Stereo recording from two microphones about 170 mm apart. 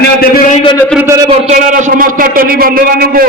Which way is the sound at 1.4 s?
45° right (ahead or behind).